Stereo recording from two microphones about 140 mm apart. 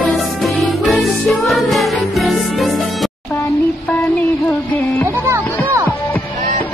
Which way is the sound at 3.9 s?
10° left (ahead or behind).